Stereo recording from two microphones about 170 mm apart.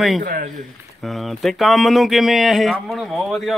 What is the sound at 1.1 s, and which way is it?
Speech, centre (ahead or behind).